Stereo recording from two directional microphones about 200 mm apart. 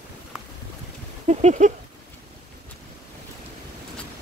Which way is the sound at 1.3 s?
35° right (ahead or behind).